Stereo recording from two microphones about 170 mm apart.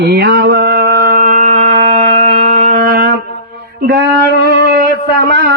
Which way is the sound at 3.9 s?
65° right (ahead or behind).